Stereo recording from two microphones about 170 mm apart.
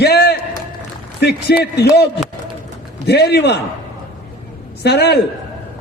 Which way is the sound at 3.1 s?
80° left.